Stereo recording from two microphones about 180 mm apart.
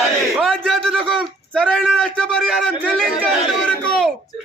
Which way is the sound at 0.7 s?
Centre (ahead or behind).